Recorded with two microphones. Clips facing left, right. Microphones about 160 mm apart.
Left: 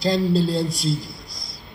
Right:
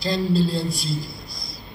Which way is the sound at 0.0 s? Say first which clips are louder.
Left 2 dB; 80° left.